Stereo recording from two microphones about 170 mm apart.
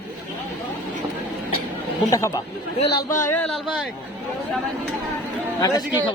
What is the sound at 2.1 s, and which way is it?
Speech, 20° left (ahead or behind).